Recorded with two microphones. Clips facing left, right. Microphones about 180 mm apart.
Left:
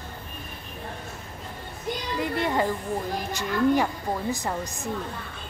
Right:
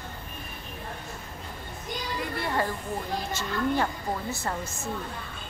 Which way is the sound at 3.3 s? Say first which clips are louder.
Left 6 dB; 15° left (ahead or behind).